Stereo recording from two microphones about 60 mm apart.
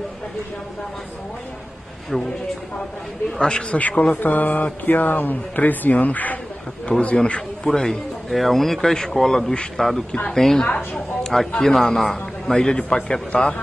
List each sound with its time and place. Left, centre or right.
2.1 s a man's voice: centre
3.3 s speech: centre
4.0 s speech: left
8.3 s a man's voice: centre
12.5 s speech: centre